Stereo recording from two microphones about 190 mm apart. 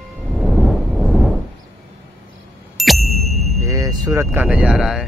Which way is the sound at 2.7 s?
Centre (ahead or behind).